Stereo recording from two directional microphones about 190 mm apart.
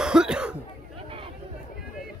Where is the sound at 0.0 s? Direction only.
5° right (ahead or behind).